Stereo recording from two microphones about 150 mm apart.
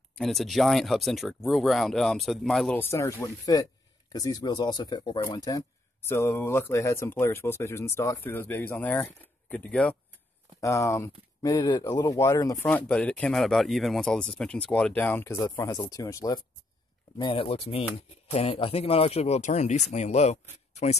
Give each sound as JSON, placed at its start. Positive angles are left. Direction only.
{"t": 0.2, "sound": "speech", "side_deg": 0}
{"t": 2.8, "sound": "speech", "side_deg": 20}
{"t": 10.6, "sound": "speech", "side_deg": 20}
{"t": 12.6, "sound": "speech", "side_deg": 5}
{"t": 17.2, "sound": "speech", "side_deg": 35}